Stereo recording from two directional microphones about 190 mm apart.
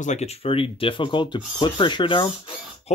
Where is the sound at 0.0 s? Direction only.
35° left (ahead or behind).